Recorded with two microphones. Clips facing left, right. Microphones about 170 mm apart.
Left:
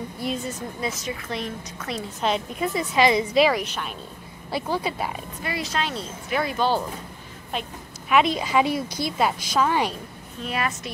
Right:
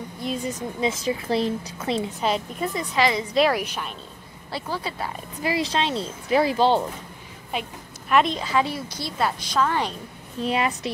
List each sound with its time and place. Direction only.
0.2 s a woman's voice: 5° left (ahead or behind)
0.6 s a woman's voice: 25° right (ahead or behind)
2.2 s a woman's voice: 5° left (ahead or behind)
3.0 s a woman's voice: 20° left (ahead or behind)
3.3 s a woman's voice: centre (ahead or behind)
4.5 s a woman's voice: 15° left (ahead or behind)
5.4 s a woman's voice: 30° right (ahead or behind)
7.5 s a woman's voice: 10° right (ahead or behind)
8.1 s a woman's voice: 5° left (ahead or behind)
10.4 s a woman's voice: 30° right (ahead or behind)